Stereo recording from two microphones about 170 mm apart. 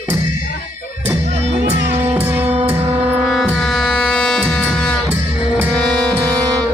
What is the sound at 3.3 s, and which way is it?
Music, centre (ahead or behind).